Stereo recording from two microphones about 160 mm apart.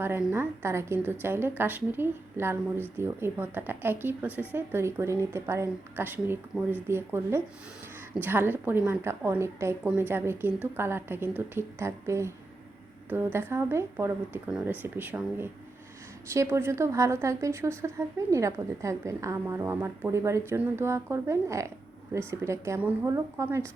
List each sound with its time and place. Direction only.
0.0 s a woman's voice: 15° right (ahead or behind)